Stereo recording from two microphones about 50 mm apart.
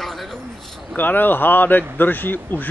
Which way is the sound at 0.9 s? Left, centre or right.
Left.